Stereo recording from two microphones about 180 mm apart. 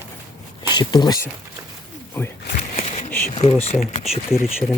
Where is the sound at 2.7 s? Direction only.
50° left (ahead or behind).